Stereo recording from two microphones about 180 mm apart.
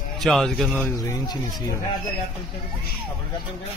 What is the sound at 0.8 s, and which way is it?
Speech, 15° left (ahead or behind).